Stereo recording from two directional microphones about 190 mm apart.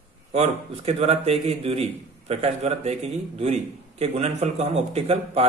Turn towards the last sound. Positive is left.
turn(degrees=-30)  # may be behind; listen again after turning